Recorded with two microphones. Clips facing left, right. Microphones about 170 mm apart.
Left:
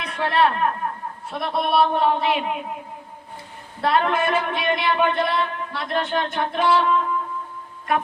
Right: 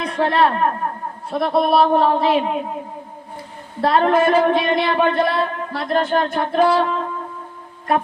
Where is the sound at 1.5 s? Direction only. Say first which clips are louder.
Right 4 dB; 35° right (ahead or behind).